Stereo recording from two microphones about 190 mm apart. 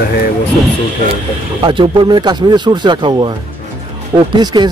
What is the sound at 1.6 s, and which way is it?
Speech, 25° right (ahead or behind).